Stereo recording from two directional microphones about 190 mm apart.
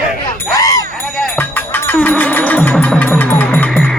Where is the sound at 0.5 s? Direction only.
20° left (ahead or behind).